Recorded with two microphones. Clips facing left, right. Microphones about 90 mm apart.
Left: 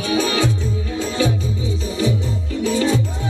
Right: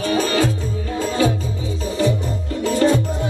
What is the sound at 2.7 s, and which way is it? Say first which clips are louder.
Music: right 2 dB; 55° right (ahead or behind).